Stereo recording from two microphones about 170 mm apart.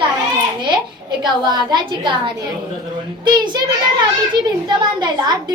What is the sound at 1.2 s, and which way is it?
A woman's voice, 25° right (ahead or behind).